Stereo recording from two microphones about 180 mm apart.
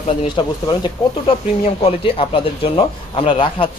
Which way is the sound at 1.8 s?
30° left (ahead or behind).